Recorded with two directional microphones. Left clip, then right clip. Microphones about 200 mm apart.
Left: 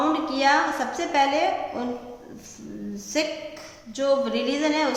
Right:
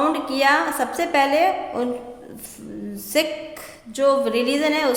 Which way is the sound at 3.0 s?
50° right (ahead or behind).